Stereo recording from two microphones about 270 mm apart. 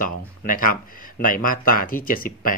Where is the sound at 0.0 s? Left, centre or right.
Left.